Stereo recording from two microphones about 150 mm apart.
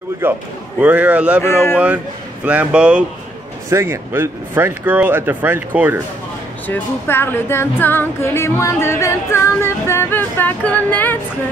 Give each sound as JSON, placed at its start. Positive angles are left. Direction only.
{"t": 0.2, "sound": "speech", "side_deg": -15}
{"t": 1.4, "sound": "speech", "side_deg": 15}
{"t": 2.4, "sound": "speech", "side_deg": -10}
{"t": 6.7, "sound": "speech", "side_deg": 15}